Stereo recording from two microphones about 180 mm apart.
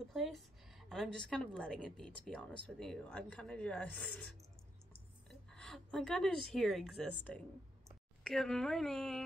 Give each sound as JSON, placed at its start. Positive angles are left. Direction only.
{"t": 0.1, "sound": "a woman's voice", "side_deg": 0}
{"t": 5.3, "sound": "a woman's voice", "side_deg": 0}